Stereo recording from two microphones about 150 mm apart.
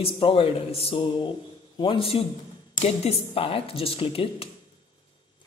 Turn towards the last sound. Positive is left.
turn(degrees=40)  # may be behind; listen again after turning